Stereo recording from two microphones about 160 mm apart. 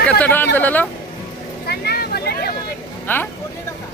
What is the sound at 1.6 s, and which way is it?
Vehicle, 85° left.